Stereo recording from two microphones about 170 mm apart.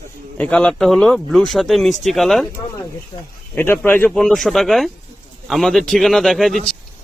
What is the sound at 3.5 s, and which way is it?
Speech, 10° left (ahead or behind).